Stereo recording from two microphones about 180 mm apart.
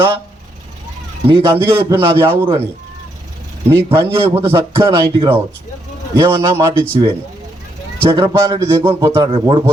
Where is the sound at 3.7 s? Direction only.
15° right (ahead or behind).